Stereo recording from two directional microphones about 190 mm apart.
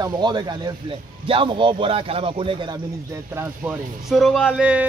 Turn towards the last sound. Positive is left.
turn(degrees=-5)  # may be behind; listen again after turning